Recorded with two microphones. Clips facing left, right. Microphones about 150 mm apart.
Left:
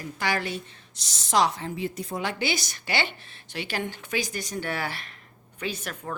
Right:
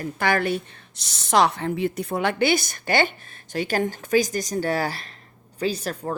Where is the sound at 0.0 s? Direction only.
55° right (ahead or behind).